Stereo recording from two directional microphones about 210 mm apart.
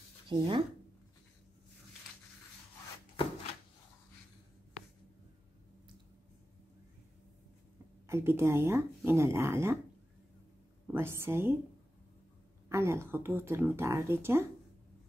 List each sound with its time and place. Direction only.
0.3 s speech: 25° right (ahead or behind)
8.1 s speech: 10° right (ahead or behind)
10.9 s speech: 10° right (ahead or behind)
12.6 s speech: 15° right (ahead or behind)